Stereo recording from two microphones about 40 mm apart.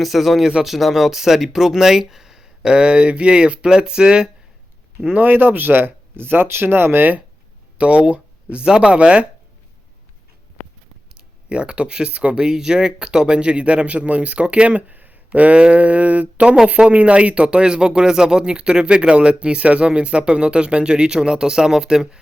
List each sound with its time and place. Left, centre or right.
0.0 s speech: centre
5.2 s speech: right
7.8 s speech: right
11.4 s speech: right
12.5 s speech: centre
14.8 s a sound: right
15.3 s a sound: right
16.9 s speech: right; by 22.2 s centre